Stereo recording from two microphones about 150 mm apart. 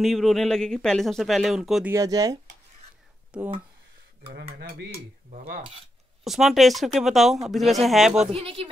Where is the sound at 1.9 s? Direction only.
25° right (ahead or behind).